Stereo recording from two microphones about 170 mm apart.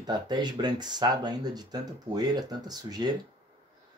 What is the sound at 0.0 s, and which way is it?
Speech, 25° right (ahead or behind).